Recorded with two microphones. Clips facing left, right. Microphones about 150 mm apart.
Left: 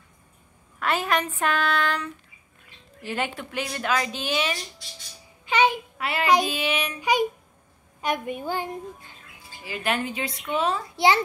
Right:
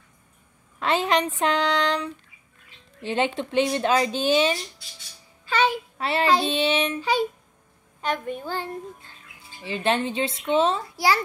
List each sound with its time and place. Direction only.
0.7 s speech: 20° right (ahead or behind)
5.5 s a child's voice: 15° left (ahead or behind)
5.9 s child singing: 30° right (ahead or behind)
6.4 s speech: 30° right (ahead or behind)
7.0 s a woman's voice: 15° left (ahead or behind)
9.7 s speech: 25° right (ahead or behind)
11.0 s a child's voice: 20° left (ahead or behind)